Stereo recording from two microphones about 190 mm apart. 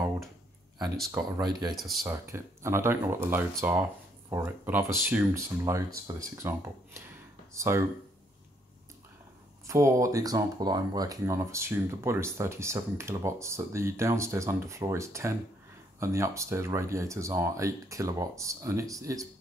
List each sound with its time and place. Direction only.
1.1 s speech: 20° right (ahead or behind)
1.7 s speech: centre (ahead or behind)
2.0 s speech: 15° right (ahead or behind)
9.7 s speech: 15° right (ahead or behind)